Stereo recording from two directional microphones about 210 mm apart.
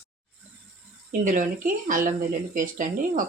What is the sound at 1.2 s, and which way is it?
Speech, 40° right (ahead or behind).